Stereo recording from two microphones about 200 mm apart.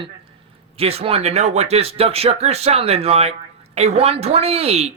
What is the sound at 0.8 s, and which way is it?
Speech, 30° right (ahead or behind).